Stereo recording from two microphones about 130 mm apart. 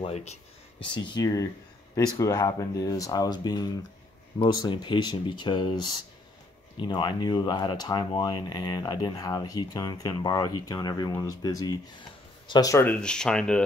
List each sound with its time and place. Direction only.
0.0 s speech: 55° left (ahead or behind)
0.7 s speech: 40° left (ahead or behind)
12.8 s speech: 10° left (ahead or behind)